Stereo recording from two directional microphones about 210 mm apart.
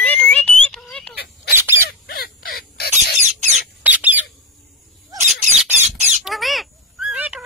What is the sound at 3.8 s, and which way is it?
Bird, 5° right (ahead or behind).